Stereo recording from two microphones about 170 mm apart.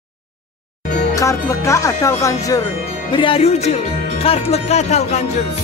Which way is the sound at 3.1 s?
30° left (ahead or behind).